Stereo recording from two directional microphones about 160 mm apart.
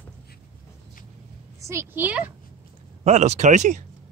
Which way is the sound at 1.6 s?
20° right (ahead or behind).